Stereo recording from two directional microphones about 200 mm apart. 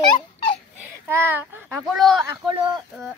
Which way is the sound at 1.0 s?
10° right (ahead or behind).